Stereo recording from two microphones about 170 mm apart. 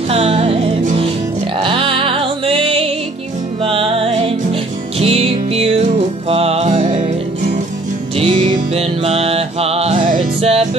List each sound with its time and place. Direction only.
0.1 s music: 35° right (ahead or behind)
8.2 s music: 35° right (ahead or behind)